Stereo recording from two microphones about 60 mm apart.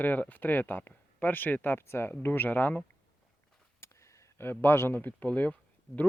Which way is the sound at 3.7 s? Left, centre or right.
Left.